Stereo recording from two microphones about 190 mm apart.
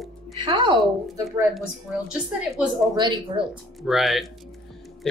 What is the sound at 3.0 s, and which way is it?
Speech, 25° right (ahead or behind).